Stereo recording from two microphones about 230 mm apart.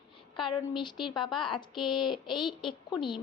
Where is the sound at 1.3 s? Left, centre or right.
Left.